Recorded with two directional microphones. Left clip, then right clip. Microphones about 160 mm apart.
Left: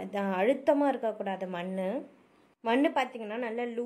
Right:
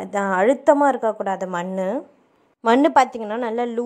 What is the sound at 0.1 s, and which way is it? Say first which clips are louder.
A woman's voice: right 10 dB; 30° right (ahead or behind).